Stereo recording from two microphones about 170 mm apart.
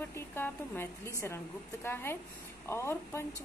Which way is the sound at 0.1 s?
15° left (ahead or behind).